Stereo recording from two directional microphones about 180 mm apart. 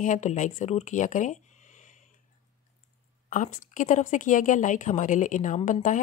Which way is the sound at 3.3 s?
45° left (ahead or behind).